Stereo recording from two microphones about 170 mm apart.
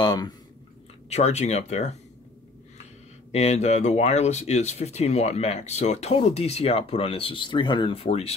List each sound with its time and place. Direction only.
0.0 s speech: 25° left (ahead or behind)
1.0 s speech: 40° left (ahead or behind)